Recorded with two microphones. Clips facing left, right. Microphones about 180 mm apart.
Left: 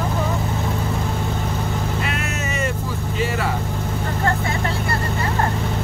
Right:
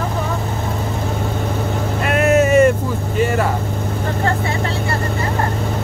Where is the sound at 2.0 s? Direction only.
55° right (ahead or behind).